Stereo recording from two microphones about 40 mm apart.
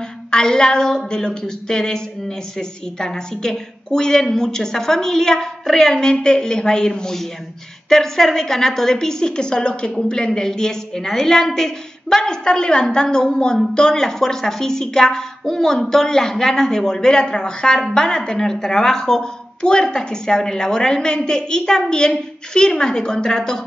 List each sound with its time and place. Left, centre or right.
0.3 s a woman's voice: centre
7.9 s a woman's voice: centre